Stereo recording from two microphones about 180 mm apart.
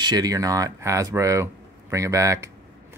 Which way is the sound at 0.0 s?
20° right (ahead or behind).